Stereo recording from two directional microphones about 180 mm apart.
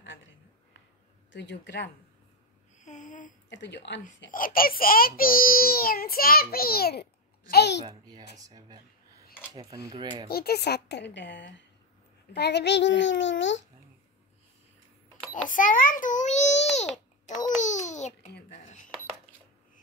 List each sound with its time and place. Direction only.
1.3 s a woman's voice: 80° left
2.8 s a sound: 45° left (ahead or behind)
3.4 s a child's voice: 80° left
4.3 s a child's voice: 50° left (ahead or behind); by 7.8 s 70° left (ahead or behind)
7.9 s speech: 20° right (ahead or behind)
10.2 s a woman's voice: 60° left (ahead or behind); by 13.7 s 90° left
15.4 s a child's voice: 45° left (ahead or behind)
16.7 s babbling: 40° left (ahead or behind)
18.5 s cutlery: 45° left (ahead or behind)